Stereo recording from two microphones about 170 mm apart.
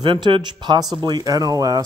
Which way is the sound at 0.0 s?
30° right (ahead or behind).